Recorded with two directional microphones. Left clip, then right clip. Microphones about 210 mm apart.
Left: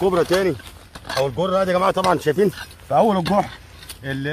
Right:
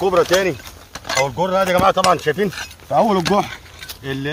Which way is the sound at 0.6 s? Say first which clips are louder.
Right 5 dB; centre (ahead or behind).